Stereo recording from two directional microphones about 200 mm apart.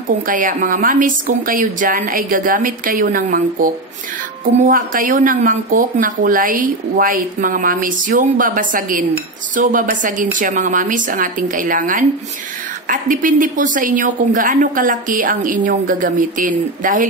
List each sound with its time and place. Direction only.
0.3 s a woman's voice: 40° right (ahead or behind)